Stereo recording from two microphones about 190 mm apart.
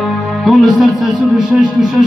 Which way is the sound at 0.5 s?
Centre (ahead or behind).